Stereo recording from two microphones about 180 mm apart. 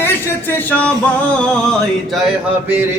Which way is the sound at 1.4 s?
5° left (ahead or behind).